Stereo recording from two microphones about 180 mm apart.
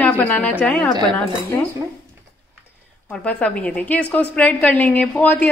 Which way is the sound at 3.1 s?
5° left (ahead or behind).